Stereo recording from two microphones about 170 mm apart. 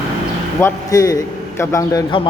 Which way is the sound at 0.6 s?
15° left (ahead or behind).